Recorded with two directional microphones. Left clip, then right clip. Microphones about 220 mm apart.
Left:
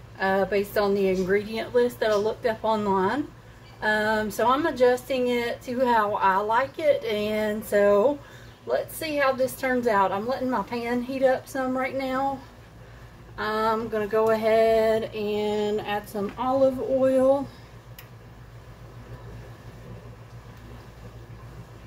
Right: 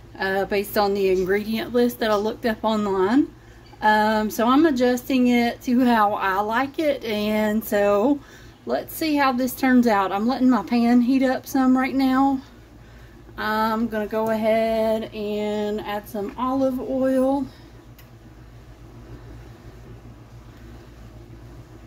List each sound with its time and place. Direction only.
0.2 s speech: 50° right (ahead or behind)
13.4 s speech: 50° right (ahead or behind)